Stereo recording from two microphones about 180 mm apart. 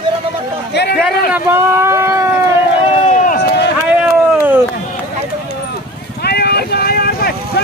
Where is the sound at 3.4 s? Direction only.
70° left (ahead or behind).